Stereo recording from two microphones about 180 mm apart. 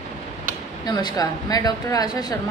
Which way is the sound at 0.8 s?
20° left (ahead or behind).